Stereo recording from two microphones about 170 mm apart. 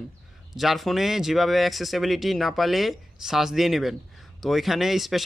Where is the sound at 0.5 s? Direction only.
Centre (ahead or behind).